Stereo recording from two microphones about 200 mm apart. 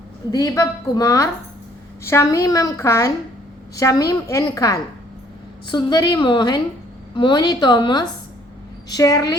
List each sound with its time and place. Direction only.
0.3 s a woman's voice: 15° left (ahead or behind)